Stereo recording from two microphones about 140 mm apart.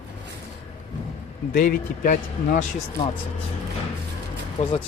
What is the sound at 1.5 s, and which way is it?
A man's voice, 85° left.